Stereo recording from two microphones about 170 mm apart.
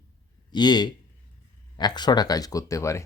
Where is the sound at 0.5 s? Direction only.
25° left (ahead or behind).